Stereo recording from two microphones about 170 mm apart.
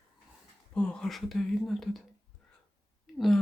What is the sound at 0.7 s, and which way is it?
Speech, centre (ahead or behind).